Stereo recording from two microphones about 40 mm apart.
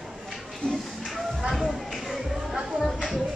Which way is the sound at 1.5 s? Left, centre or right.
Centre.